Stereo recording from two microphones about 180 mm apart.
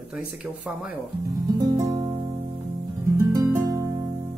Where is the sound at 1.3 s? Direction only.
20° right (ahead or behind).